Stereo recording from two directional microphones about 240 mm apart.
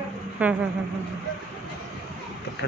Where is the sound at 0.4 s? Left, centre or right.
Centre.